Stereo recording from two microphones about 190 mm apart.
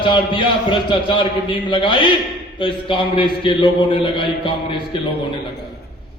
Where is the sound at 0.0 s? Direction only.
25° left (ahead or behind).